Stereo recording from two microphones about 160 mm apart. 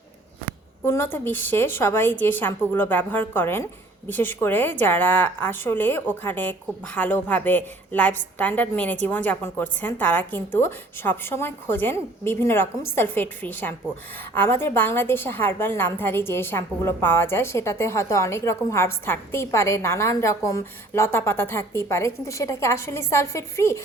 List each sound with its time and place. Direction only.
0.9 s a woman's voice: 15° left (ahead or behind)